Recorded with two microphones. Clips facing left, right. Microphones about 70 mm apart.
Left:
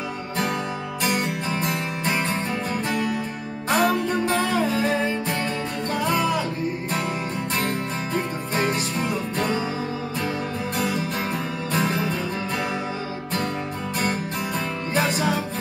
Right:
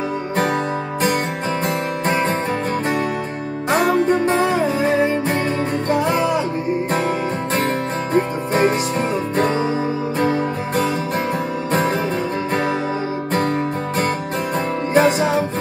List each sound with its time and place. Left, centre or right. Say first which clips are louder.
1.6 s music: right 5 dB; right
3.7 s music: right 5 dB; right
4.4 s music: right 5 dB; right
8.1 s music: right 10 dB; right
11.7 s music: right 5 dB; right
15.0 s music: right 8 dB; right